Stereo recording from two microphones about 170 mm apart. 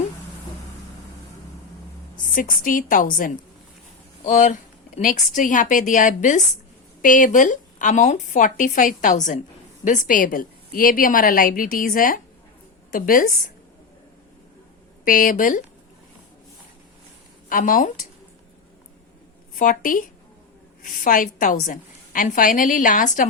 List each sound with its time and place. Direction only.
2.3 s a woman's voice: 55° left (ahead or behind)
15.0 s a woman's voice: 55° left (ahead or behind)
17.5 s a woman's voice: 50° left (ahead or behind)
19.5 s a woman's voice: 55° left (ahead or behind)